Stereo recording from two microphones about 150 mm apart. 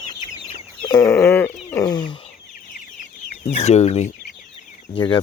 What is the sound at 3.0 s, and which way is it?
Chicken, 50° left (ahead or behind).